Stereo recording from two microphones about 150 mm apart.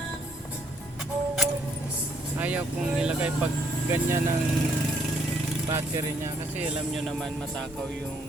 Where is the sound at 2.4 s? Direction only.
10° right (ahead or behind).